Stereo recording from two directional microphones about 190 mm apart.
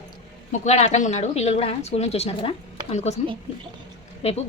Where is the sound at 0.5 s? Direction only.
35° left (ahead or behind).